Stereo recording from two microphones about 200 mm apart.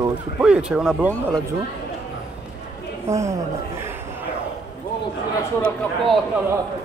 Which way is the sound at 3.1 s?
15° right (ahead or behind).